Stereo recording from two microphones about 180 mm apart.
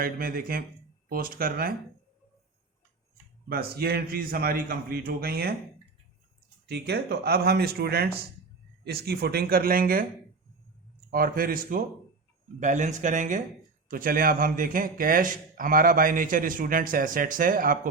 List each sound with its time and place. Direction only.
0.0 s a man's voice: 55° right (ahead or behind)
3.5 s a man's voice: 60° right (ahead or behind)
6.7 s a man's voice: 65° right (ahead or behind)
11.1 s a man's voice: 55° right (ahead or behind)